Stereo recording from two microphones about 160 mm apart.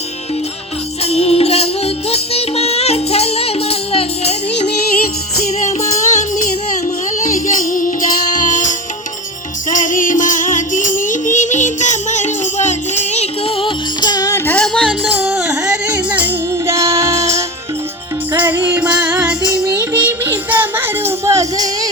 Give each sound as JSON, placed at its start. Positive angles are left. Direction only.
{"t": 1.0, "sound": "music", "side_deg": 40}
{"t": 15.1, "sound": "music", "side_deg": -5}